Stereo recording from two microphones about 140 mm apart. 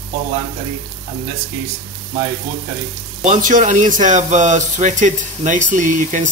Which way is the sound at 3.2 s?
60° right (ahead or behind).